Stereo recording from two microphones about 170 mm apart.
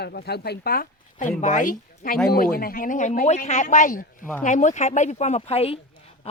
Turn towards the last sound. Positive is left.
turn(degrees=35)  # may be behind; listen again after turning